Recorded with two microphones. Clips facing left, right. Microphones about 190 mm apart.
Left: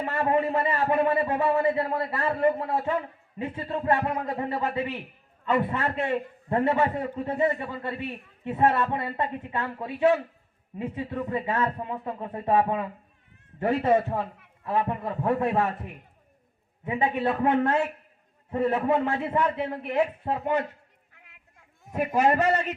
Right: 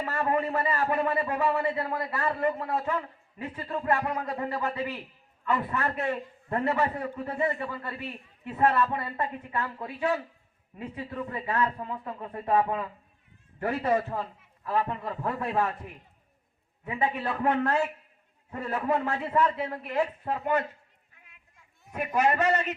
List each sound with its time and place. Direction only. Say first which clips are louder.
0.0 s a man's voice: left 3 dB; 25° left (ahead or behind)
14.2 s a man's voice: left 3 dB; 60° left (ahead or behind)
14.6 s a man's voice: left 2 dB; 25° left (ahead or behind)
16.8 s a man's voice: left 4 dB; 20° left (ahead or behind)
21.9 s a man's voice: left 3 dB; 35° left (ahead or behind)